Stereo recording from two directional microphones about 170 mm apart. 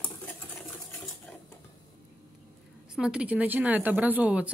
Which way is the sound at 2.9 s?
5° right (ahead or behind).